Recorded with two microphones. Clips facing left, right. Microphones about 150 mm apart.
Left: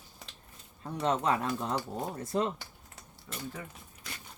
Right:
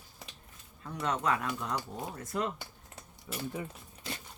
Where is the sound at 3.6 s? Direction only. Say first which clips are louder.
Right 4 dB; 25° right (ahead or behind).